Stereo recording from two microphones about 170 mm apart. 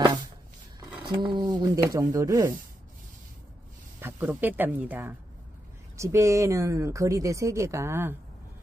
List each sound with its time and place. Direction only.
1.0 s speech: 25° right (ahead or behind)
4.0 s speech: 10° right (ahead or behind)